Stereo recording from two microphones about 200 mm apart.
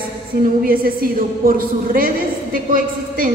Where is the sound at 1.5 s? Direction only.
45° right (ahead or behind).